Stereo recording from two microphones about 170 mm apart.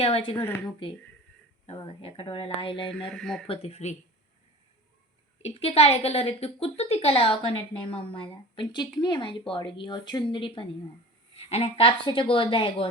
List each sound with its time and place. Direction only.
0.0 s a woman's voice: 35° left (ahead or behind)
0.4 s speech: 10° left (ahead or behind)
1.6 s a woman's voice: 35° left (ahead or behind)
3.1 s speech: 5° left (ahead or behind)
3.4 s a woman's voice: 35° left (ahead or behind)
5.4 s a woman's voice: 35° left (ahead or behind)